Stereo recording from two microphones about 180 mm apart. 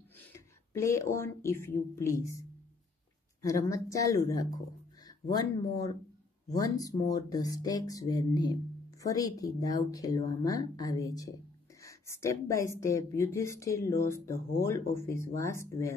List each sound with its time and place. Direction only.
0.7 s speech: 15° left (ahead or behind)
3.4 s speech: 15° left (ahead or behind)